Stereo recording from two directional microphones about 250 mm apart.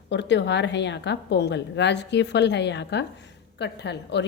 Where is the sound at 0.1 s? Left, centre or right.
Left.